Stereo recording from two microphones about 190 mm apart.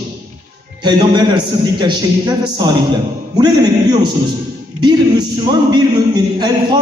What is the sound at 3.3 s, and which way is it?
A man's voice, 20° right (ahead or behind).